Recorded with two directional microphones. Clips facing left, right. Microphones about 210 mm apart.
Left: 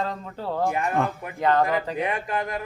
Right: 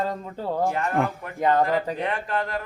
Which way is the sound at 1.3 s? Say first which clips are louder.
Even; 15° right (ahead or behind).